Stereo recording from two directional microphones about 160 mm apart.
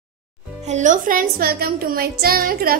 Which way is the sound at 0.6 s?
50° right (ahead or behind).